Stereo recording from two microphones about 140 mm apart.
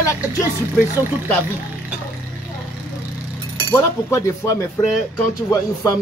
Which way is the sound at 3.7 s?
20° left (ahead or behind).